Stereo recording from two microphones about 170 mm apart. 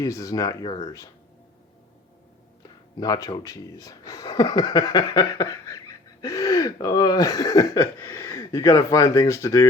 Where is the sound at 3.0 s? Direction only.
20° left (ahead or behind).